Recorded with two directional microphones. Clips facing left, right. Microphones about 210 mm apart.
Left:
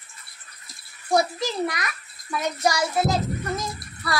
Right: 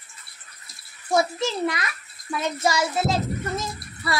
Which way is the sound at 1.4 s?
25° right (ahead or behind).